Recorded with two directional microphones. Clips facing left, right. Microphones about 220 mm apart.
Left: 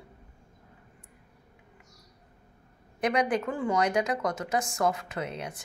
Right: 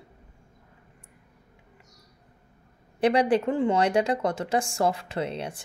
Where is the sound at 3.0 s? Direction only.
30° right (ahead or behind).